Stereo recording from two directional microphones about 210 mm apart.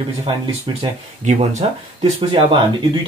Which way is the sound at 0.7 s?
25° right (ahead or behind).